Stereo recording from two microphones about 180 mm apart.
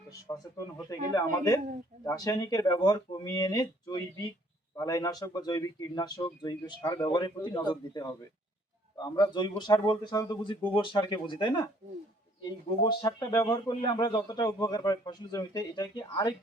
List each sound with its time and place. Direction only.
0.1 s a man's voice: 20° left (ahead or behind)